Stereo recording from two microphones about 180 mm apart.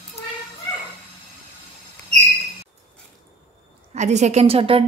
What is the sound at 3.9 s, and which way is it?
Speech, 40° right (ahead or behind).